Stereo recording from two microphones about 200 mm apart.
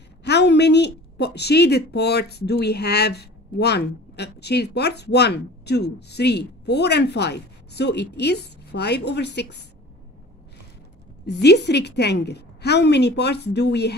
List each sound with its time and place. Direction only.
0.2 s a woman's voice: 60° left (ahead or behind)
11.2 s a woman's voice: 55° left (ahead or behind)